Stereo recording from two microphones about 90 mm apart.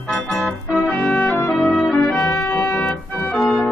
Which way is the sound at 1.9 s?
25° left (ahead or behind).